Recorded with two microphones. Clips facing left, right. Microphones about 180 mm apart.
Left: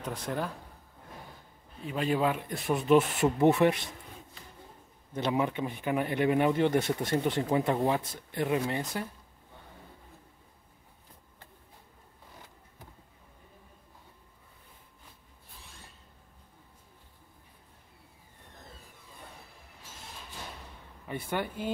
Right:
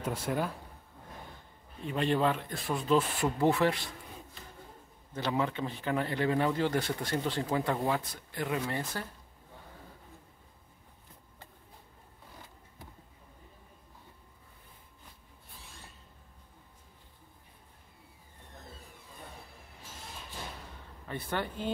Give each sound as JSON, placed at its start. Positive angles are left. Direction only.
{"t": 0.0, "sound": "speech", "side_deg": -5}
{"t": 1.9, "sound": "a man's voice", "side_deg": 5}
{"t": 2.5, "sound": "speech", "side_deg": 20}
{"t": 5.1, "sound": "speech", "side_deg": 15}
{"t": 21.1, "sound": "speech", "side_deg": 10}